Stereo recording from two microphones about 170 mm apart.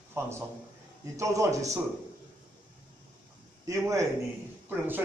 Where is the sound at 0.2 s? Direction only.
15° right (ahead or behind).